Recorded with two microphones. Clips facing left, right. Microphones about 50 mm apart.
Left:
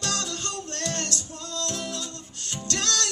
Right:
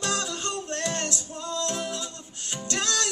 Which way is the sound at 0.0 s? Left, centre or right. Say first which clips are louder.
Right 2 dB; centre.